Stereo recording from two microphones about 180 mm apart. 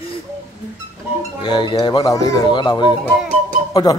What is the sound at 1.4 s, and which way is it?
Speech, 25° left (ahead or behind).